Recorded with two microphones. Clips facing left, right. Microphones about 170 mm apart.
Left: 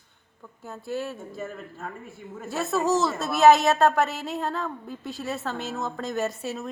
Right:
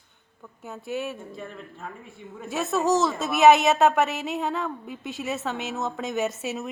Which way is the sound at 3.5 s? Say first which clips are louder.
Even; 20° right (ahead or behind).